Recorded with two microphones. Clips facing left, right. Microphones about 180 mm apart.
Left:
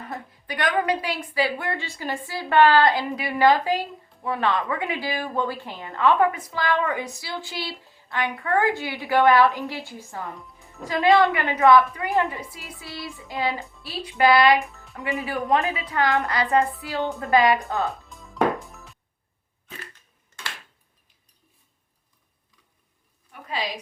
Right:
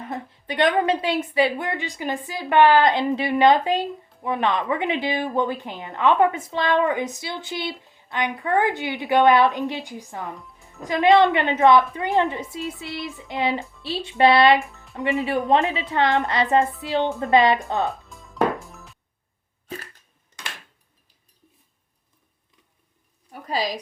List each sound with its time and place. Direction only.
0.1 s a woman's voice: 25° right (ahead or behind)
10.3 s music: centre (ahead or behind)
10.8 s a woman's voice: 20° right (ahead or behind)
13.7 s music: centre (ahead or behind)
13.9 s a woman's voice: 25° right (ahead or behind)
14.6 s music: centre (ahead or behind)
15.2 s a woman's voice: 20° right (ahead or behind)
18.1 s music: centre (ahead or behind)
23.3 s a sound: 40° right (ahead or behind)